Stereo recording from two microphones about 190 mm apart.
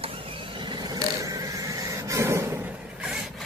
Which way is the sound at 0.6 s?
25° right (ahead or behind).